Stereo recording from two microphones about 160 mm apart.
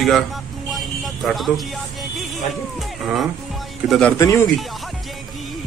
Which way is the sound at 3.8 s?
Centre (ahead or behind).